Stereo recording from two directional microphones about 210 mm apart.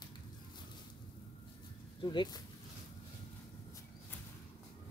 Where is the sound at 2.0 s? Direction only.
20° left (ahead or behind).